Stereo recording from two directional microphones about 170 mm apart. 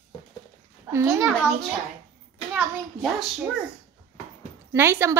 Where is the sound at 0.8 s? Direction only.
15° right (ahead or behind).